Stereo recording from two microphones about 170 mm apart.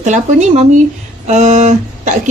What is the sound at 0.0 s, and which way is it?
Speech, 45° right (ahead or behind).